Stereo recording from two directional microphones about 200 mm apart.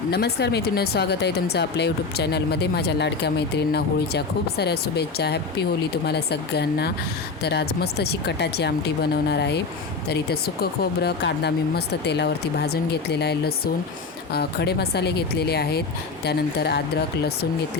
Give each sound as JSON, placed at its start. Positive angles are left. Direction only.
{"t": 0.1, "sound": "speech", "side_deg": 55}